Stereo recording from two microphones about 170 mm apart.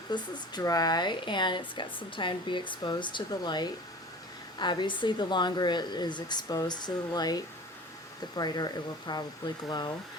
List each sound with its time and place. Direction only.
0.1 s speech: 25° left (ahead or behind)